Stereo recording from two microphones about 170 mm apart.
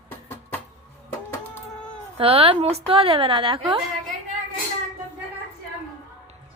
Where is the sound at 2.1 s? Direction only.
35° right (ahead or behind).